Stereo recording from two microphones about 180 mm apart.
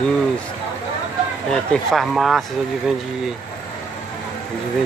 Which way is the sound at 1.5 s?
5° left (ahead or behind).